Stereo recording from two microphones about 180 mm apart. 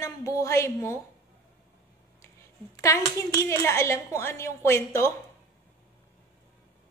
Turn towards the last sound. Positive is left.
turn(degrees=15)  # may be behind; listen again after turning